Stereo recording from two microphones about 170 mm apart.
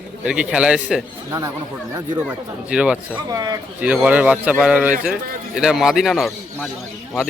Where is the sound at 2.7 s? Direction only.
5° right (ahead or behind).